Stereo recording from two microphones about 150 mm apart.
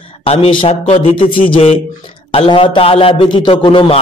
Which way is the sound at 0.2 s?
40° left (ahead or behind).